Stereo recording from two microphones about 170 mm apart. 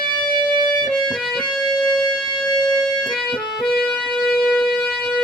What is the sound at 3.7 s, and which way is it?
Music, centre (ahead or behind).